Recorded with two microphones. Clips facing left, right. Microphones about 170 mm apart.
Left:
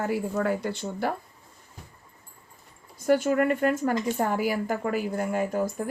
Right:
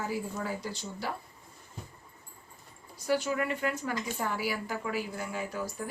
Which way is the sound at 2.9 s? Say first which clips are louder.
Left 7 dB; 50° left (ahead or behind).